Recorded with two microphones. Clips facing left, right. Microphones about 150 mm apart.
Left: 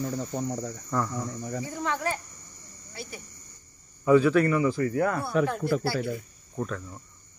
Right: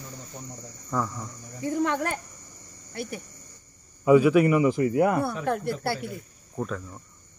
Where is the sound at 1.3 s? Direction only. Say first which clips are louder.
Left 8 dB; 75° left (ahead or behind).